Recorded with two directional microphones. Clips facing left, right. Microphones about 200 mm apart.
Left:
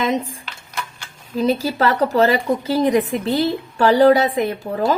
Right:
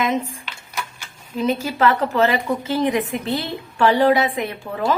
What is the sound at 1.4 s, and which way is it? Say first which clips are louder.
A woman's voice: left 2 dB; 35° left (ahead or behind).